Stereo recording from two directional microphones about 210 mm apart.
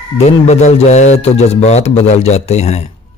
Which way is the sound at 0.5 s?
30° left (ahead or behind).